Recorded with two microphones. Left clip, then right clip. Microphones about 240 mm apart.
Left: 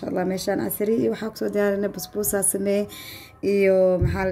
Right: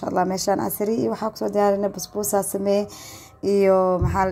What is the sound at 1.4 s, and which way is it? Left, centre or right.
Speech, centre.